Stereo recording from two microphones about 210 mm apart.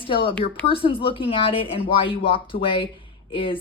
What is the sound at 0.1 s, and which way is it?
Speech, 25° left (ahead or behind).